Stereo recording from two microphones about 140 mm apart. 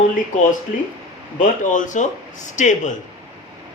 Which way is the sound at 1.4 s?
65° left (ahead or behind).